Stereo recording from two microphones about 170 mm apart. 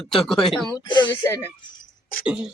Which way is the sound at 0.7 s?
25° left (ahead or behind).